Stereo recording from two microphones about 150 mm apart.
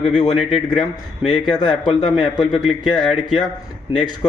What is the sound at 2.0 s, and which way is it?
A man's voice, centre (ahead or behind).